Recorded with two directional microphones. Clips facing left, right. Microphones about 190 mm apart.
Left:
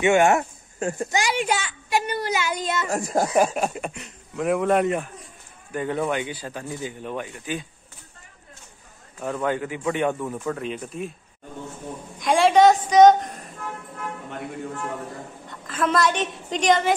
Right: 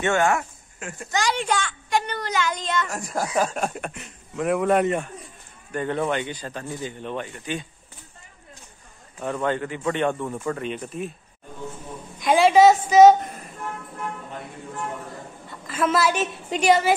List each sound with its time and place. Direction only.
0.0 s speech: 15° left (ahead or behind)
0.7 s speech: 35° left (ahead or behind)
1.1 s a child's voice: 10° left (ahead or behind)
2.9 s speech: 25° left (ahead or behind)
3.3 s speech: 5° left (ahead or behind)
9.2 s speech: 5° left (ahead or behind)
12.2 s speech: centre (ahead or behind)
15.6 s a woman's voice: 5° right (ahead or behind)